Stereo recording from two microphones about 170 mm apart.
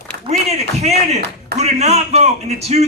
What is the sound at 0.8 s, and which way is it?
Speech, 40° right (ahead or behind).